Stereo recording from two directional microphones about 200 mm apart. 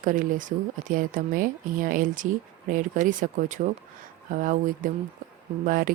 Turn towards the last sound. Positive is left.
turn(degrees=-45)  # may be behind; listen again after turning